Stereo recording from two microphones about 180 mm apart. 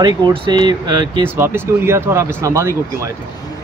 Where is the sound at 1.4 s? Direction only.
15° right (ahead or behind).